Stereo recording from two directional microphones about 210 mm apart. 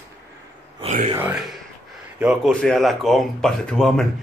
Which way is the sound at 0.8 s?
30° right (ahead or behind).